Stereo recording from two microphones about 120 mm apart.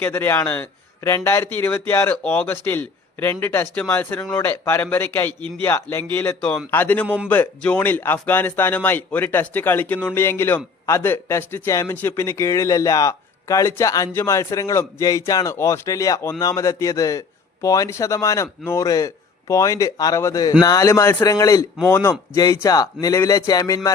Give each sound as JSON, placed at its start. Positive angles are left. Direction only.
{"t": 0.0, "sound": "a man's voice", "side_deg": 20}